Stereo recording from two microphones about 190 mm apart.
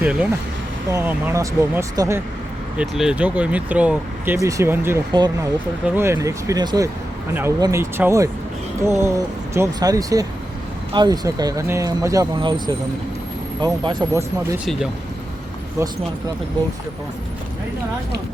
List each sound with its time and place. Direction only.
0.0 s speech: 5° right (ahead or behind)
2.7 s speech: centre (ahead or behind)
14.6 s speech: centre (ahead or behind)